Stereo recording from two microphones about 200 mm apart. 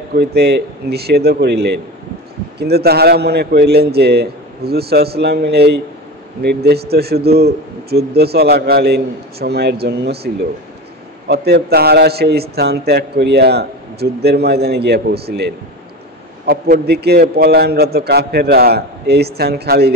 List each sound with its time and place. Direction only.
0.1 s a man's voice: 55° right (ahead or behind)